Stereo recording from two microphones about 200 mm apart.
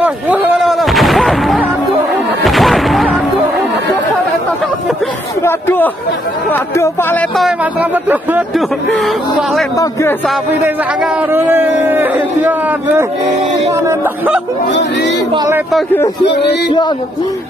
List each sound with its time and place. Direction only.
0.0 s artillery fire: 5° right (ahead or behind)
2.4 s music: centre (ahead or behind)
5.4 s speech: 10° left (ahead or behind)
7.3 s a man's voice: 5° right (ahead or behind)
9.8 s speech: 15° left (ahead or behind)
10.2 s a man's voice: centre (ahead or behind)
14.7 s speech: 60° left (ahead or behind)
15.3 s a man's voice: 15° right (ahead or behind)
15.7 s speech: 10° left (ahead or behind)